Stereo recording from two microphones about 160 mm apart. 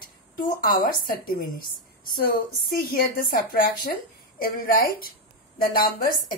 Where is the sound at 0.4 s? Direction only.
65° left (ahead or behind).